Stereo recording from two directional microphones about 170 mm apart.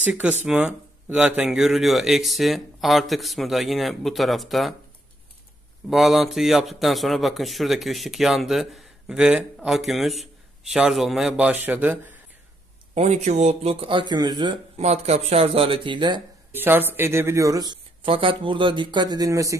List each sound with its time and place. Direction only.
0.0 s a man's voice: 5° right (ahead or behind)
5.9 s a man's voice: centre (ahead or behind)
12.9 s speech: 40° right (ahead or behind)
14.8 s speech: 40° right (ahead or behind)
16.5 s speech: 10° right (ahead or behind)